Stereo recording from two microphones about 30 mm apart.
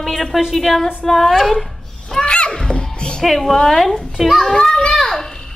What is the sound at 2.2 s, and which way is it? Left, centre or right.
Speech, left.